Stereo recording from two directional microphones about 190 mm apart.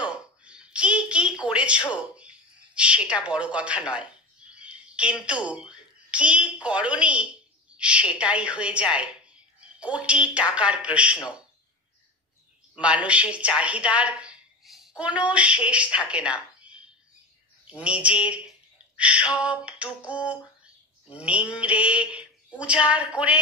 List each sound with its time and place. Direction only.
0.0 s a sound: 5° right (ahead or behind)
2.1 s a woman's voice: 5° right (ahead or behind)
12.7 s a woman's voice: 5° right (ahead or behind)